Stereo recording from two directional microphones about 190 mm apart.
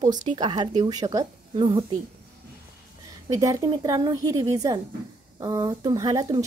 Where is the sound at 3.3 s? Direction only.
20° right (ahead or behind).